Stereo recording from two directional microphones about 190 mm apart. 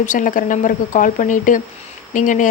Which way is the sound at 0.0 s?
45° left (ahead or behind).